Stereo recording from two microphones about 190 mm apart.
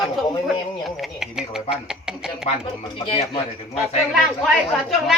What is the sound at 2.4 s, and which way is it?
Speech, 25° left (ahead or behind).